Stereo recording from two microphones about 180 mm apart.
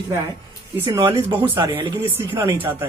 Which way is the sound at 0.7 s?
15° right (ahead or behind).